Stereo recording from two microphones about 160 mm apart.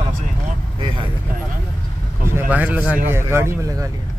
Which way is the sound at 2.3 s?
10° right (ahead or behind).